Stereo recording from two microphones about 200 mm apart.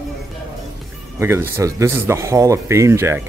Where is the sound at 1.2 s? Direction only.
10° right (ahead or behind).